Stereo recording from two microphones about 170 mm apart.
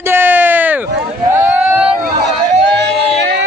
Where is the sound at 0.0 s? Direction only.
10° right (ahead or behind).